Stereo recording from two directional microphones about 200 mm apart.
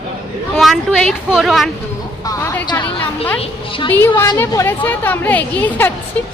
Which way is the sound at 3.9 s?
10° left (ahead or behind).